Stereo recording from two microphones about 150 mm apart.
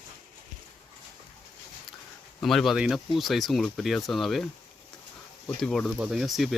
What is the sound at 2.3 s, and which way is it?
Speech, centre (ahead or behind).